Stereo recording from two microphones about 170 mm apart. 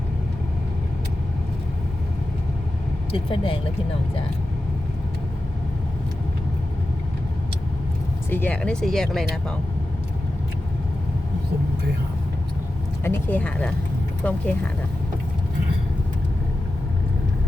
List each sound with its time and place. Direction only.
3.1 s speech: 30° left (ahead or behind)
8.3 s speech: 10° left (ahead or behind)
13.1 s speech: 10° left (ahead or behind)